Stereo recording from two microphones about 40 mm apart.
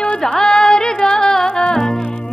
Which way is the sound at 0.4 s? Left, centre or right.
Centre.